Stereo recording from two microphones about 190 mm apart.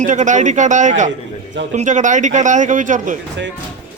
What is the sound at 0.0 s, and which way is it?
Speech, 40° right (ahead or behind).